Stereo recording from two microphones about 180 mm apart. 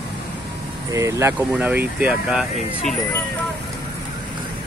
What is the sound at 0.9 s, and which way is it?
Speech, 15° right (ahead or behind).